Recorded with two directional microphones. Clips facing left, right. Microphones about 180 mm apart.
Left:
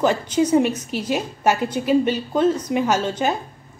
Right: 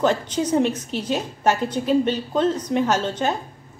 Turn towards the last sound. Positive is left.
turn(degrees=10)  # may be behind; listen again after turning